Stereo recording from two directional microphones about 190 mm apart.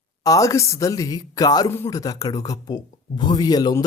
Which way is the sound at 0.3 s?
15° left (ahead or behind).